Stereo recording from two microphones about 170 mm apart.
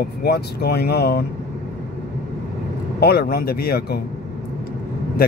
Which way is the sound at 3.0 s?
70° left (ahead or behind).